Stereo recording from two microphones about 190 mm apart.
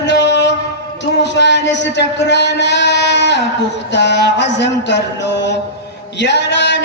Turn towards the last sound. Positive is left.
turn(degrees=65)  # may be behind; listen again after turning